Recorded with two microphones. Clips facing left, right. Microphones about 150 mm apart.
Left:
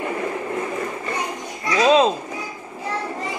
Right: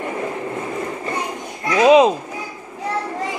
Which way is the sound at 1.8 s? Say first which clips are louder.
Right 4 dB; 15° right (ahead or behind).